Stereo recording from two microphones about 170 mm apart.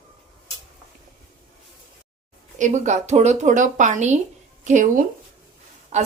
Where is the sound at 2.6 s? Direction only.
45° right (ahead or behind).